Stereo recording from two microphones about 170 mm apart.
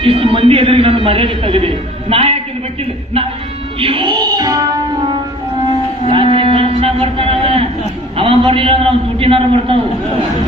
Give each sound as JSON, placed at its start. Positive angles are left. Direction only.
{"t": 0.0, "sound": "a man's voice", "side_deg": -30}
{"t": 3.8, "sound": "music", "side_deg": -30}
{"t": 6.1, "sound": "a sound", "side_deg": -30}
{"t": 8.1, "sound": "a man's voice", "side_deg": -30}